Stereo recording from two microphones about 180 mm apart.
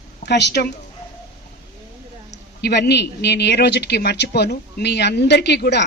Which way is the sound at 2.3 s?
70° left (ahead or behind).